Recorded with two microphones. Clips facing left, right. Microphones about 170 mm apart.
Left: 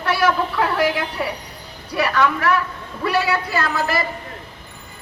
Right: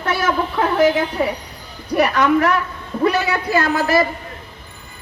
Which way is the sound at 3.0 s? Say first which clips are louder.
Right 2 dB; 45° right (ahead or behind).